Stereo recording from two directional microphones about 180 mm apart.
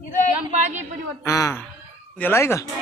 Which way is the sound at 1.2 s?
15° left (ahead or behind).